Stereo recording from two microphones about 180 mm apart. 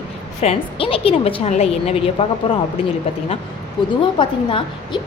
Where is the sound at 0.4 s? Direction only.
30° left (ahead or behind).